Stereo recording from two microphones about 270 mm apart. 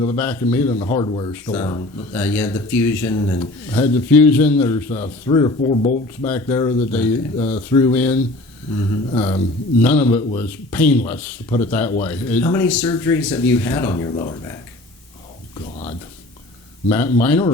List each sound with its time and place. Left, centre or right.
0.0 s speech: centre
6.2 s speech: centre
16.9 s speech: centre